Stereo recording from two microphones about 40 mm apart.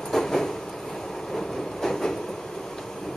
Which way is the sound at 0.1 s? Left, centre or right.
Centre.